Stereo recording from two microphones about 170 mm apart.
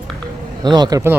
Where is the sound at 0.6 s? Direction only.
25° right (ahead or behind).